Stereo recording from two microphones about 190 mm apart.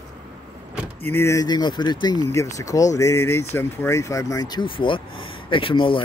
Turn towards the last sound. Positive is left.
turn(degrees=25)  # may be behind; listen again after turning